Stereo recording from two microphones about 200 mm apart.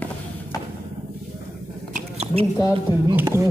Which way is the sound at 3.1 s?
10° right (ahead or behind).